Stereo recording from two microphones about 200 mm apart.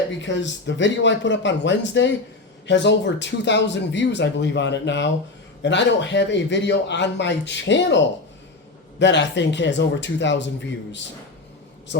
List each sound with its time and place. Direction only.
0.2 s speech: 65° left (ahead or behind)
11.9 s a man's voice: 60° left (ahead or behind)